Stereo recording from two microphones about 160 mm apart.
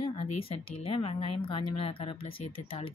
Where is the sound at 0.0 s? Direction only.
35° left (ahead or behind).